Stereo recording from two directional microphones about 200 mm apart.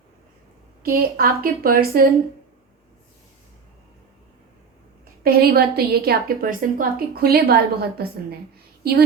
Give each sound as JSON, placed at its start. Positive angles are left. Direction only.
{"t": 0.8, "sound": "a woman's voice", "side_deg": -50}
{"t": 5.2, "sound": "a woman's voice", "side_deg": -50}